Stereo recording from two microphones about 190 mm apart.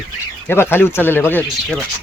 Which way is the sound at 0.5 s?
10° left (ahead or behind).